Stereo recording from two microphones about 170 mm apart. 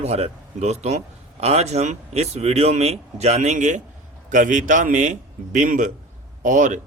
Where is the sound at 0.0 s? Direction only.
40° right (ahead or behind).